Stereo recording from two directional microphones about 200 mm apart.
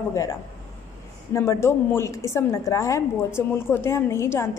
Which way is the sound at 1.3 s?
15° left (ahead or behind).